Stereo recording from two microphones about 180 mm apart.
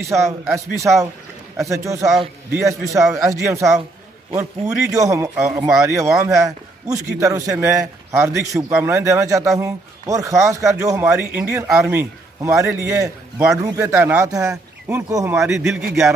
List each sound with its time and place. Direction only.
0.1 s speech: 15° right (ahead or behind)
15.4 s a man's voice: 5° right (ahead or behind)